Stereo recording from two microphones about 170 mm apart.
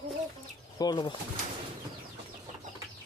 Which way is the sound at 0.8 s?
25° left (ahead or behind).